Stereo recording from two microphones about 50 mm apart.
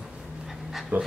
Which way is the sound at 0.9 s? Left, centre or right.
Right.